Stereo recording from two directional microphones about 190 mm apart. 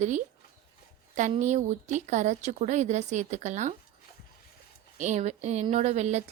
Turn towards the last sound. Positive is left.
turn(degrees=-35)  # may be behind; listen again after turning